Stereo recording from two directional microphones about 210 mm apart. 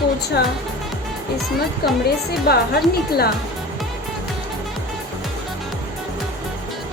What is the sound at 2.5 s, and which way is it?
Speech, 50° left (ahead or behind).